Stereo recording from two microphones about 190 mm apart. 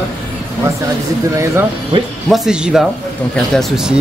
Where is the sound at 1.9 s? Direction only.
30° right (ahead or behind).